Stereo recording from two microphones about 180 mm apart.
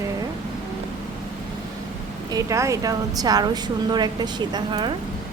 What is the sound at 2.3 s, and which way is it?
A woman's voice, 20° right (ahead or behind).